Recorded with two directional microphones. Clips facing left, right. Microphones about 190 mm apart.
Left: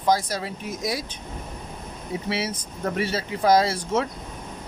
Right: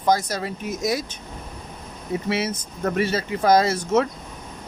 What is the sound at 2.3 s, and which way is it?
Speech, 45° right (ahead or behind).